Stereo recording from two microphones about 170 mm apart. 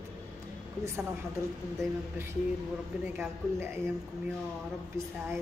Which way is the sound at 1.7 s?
15° right (ahead or behind).